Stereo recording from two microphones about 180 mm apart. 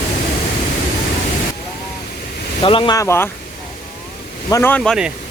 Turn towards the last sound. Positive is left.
turn(degrees=10)  # may be behind; listen again after turning